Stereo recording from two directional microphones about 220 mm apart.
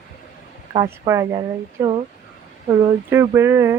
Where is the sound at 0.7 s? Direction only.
15° right (ahead or behind).